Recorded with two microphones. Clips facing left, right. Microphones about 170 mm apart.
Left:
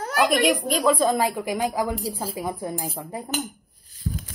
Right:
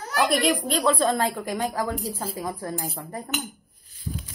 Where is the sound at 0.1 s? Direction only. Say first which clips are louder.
Left 2 dB; centre (ahead or behind).